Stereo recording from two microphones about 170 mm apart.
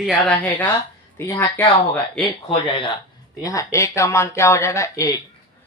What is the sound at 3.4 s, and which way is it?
Speech, 20° left (ahead or behind).